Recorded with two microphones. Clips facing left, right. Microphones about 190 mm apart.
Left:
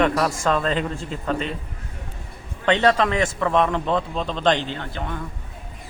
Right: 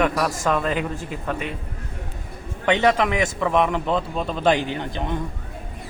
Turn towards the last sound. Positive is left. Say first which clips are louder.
# right 3 dB
turn(degrees=-20)  # may be behind; listen again after turning